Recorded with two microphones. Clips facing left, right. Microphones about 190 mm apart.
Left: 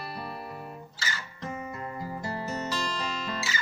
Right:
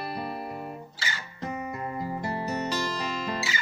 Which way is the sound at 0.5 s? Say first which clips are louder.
Right 4 dB; 40° right (ahead or behind).